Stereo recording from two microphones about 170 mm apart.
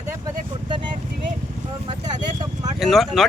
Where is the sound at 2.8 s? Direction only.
Centre (ahead or behind).